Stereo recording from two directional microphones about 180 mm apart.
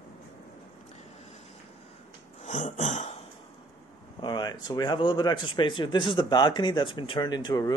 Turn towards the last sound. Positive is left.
turn(degrees=20)  # may be behind; listen again after turning